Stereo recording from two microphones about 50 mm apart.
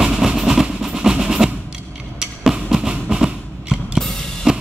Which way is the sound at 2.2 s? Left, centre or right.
Centre.